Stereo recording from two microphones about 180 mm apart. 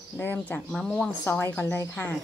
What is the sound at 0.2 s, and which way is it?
Speech, 10° left (ahead or behind).